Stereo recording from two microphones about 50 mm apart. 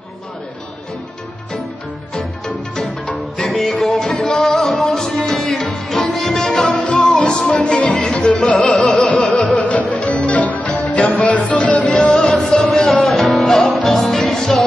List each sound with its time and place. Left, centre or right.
2.1 s music: centre
6.8 s music: centre
12.8 s music: centre